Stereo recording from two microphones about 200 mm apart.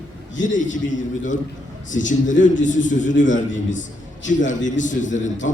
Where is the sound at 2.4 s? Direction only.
40° left (ahead or behind).